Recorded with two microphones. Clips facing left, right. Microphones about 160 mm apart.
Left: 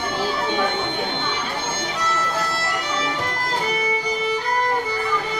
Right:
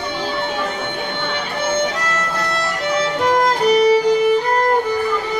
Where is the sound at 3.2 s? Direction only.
75° right (ahead or behind).